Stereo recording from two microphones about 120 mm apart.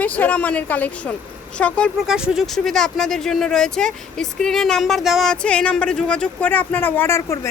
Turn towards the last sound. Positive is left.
turn(degrees=20)  # may be behind; listen again after turning